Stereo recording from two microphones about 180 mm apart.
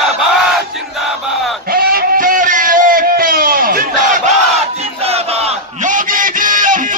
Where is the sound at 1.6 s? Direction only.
55° right (ahead or behind).